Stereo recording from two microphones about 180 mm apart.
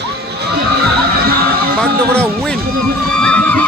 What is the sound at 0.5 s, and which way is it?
Music, 60° right (ahead or behind).